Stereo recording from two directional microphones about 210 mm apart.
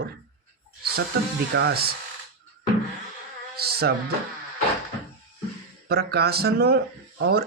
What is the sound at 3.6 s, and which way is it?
Music, 50° right (ahead or behind).